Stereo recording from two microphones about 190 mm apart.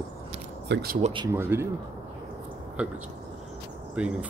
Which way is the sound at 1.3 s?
15° right (ahead or behind).